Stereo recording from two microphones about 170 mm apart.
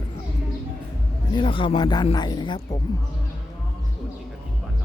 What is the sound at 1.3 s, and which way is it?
Speech, 30° left (ahead or behind).